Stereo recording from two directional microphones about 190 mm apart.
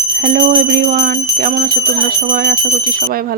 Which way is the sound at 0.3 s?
45° right (ahead or behind).